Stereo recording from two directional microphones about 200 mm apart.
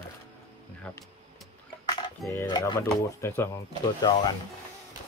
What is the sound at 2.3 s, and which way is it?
Speech, 15° left (ahead or behind).